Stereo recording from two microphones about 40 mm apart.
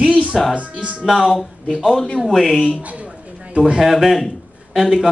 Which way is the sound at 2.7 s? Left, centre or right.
Right.